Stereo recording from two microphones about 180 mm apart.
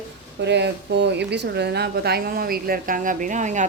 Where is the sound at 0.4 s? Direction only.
70° right (ahead or behind).